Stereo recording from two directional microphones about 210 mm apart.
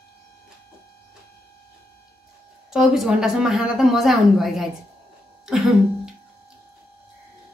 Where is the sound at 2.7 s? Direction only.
Centre (ahead or behind).